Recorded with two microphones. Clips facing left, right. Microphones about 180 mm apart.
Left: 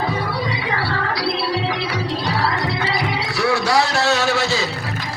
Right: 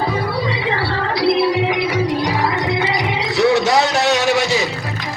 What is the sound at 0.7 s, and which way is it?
Music, 25° right (ahead or behind).